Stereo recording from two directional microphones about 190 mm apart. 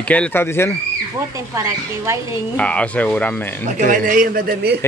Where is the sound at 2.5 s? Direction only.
5° left (ahead or behind).